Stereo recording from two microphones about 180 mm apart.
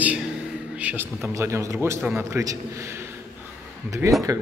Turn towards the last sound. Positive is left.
turn(degrees=-15)  # may be behind; listen again after turning